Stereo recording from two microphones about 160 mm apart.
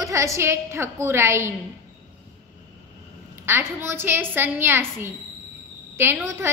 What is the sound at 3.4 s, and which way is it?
A woman's voice, 15° right (ahead or behind).